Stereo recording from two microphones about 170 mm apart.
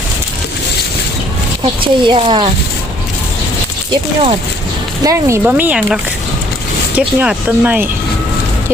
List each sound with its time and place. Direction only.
1.6 s speech: 30° right (ahead or behind)
5.0 s speech: 15° right (ahead or behind)